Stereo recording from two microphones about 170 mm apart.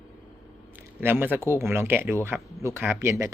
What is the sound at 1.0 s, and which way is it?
A man's voice, 10° right (ahead or behind).